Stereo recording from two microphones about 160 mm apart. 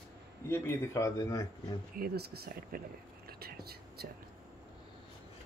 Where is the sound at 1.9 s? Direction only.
75° right (ahead or behind).